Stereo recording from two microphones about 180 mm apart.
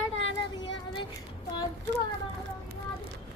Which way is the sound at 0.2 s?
90° left.